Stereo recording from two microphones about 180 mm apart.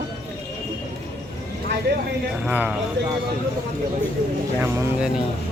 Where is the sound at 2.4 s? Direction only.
5° right (ahead or behind).